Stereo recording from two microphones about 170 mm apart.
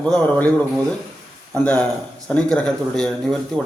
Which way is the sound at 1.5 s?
5° left (ahead or behind).